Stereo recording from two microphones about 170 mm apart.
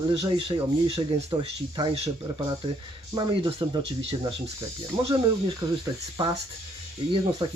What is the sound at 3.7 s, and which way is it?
Speech, 25° right (ahead or behind).